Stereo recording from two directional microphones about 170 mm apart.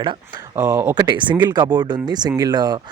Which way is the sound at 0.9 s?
25° right (ahead or behind).